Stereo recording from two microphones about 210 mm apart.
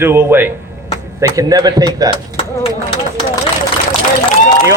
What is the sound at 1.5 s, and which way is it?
Speech, 20° right (ahead or behind).